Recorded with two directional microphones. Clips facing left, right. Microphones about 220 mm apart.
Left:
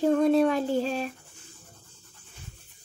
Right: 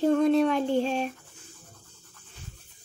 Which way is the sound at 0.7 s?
40° left (ahead or behind).